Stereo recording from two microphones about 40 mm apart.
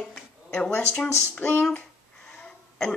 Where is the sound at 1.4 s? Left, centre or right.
Left.